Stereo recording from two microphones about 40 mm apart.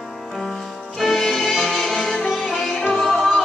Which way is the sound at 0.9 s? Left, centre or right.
Centre.